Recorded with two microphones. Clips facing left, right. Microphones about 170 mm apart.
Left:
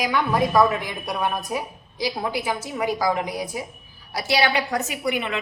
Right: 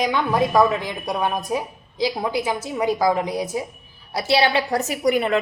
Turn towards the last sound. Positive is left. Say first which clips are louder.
# right 6 dB
turn(degrees=-40)  # may be behind; listen again after turning